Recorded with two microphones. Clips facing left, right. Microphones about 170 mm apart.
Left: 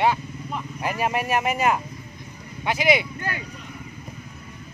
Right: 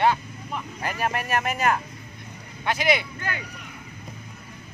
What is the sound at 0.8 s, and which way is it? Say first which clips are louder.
Speech: left 3 dB; 15° left (ahead or behind).